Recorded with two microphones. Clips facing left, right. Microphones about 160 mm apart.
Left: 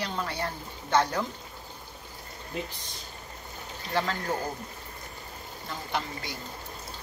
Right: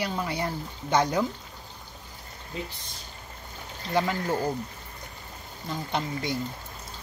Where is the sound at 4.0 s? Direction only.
15° right (ahead or behind).